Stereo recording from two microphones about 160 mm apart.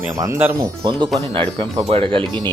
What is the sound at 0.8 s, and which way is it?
Speech, 30° right (ahead or behind).